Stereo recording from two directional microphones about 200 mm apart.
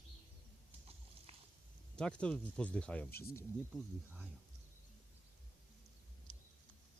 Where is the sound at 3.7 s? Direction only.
5° right (ahead or behind).